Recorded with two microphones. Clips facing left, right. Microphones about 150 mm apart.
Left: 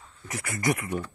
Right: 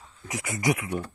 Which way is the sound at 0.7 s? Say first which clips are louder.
Right 1 dB; centre (ahead or behind).